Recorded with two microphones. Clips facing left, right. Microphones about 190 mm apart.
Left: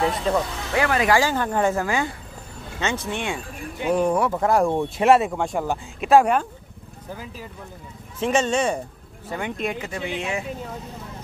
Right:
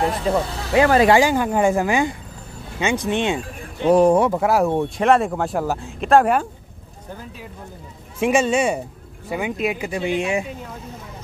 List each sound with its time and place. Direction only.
0.1 s speech: 5° right (ahead or behind)
0.7 s speech: 30° right (ahead or behind)
1.1 s speech: 15° right (ahead or behind)
3.9 s speech: 35° right (ahead or behind)
4.4 s speech: 5° right (ahead or behind)
8.2 s speech: 10° right (ahead or behind)